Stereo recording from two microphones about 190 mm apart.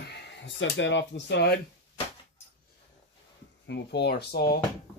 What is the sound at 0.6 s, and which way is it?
Speech, 70° left (ahead or behind).